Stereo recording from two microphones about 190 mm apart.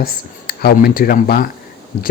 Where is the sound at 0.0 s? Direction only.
55° left (ahead or behind).